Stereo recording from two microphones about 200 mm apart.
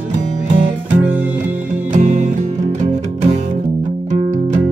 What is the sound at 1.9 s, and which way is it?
Music, 35° right (ahead or behind).